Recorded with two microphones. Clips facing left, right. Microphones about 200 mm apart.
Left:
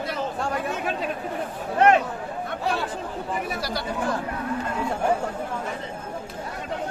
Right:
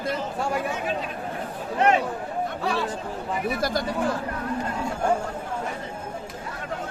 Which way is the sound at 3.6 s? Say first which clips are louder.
Right 4 dB; 50° right (ahead or behind).